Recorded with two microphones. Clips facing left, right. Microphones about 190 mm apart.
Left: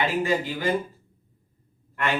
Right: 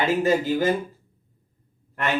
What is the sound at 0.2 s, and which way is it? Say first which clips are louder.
Speech: right 5 dB; 45° right (ahead or behind).